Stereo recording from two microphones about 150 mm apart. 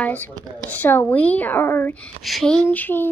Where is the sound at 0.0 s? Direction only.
10° left (ahead or behind).